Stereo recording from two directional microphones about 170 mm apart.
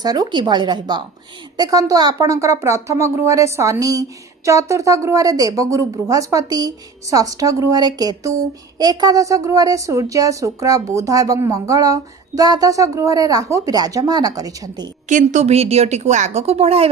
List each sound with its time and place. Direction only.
0.0 s a woman's voice: 25° right (ahead or behind)
15.1 s a woman's voice: 45° right (ahead or behind)